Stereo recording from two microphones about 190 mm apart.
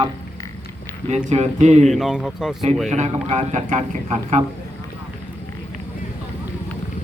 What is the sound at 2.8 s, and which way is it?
A man's voice, 40° right (ahead or behind).